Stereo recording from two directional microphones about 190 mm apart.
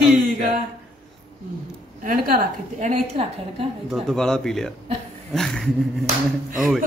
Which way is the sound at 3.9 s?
Centre (ahead or behind).